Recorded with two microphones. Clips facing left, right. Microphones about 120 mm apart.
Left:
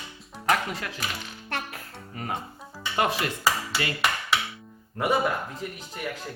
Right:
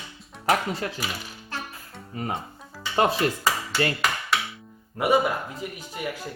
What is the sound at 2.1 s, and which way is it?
Speech, 25° right (ahead or behind).